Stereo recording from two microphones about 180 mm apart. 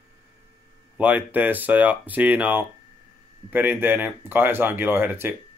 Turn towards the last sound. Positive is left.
turn(degrees=-10)  # may be behind; listen again after turning